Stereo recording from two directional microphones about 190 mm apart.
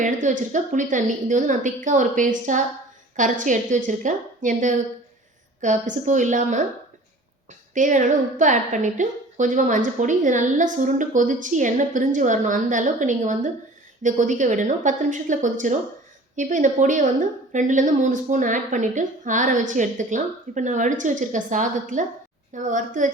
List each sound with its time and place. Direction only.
0.0 s a woman's voice: 40° right (ahead or behind)
7.7 s a woman's voice: 40° right (ahead or behind)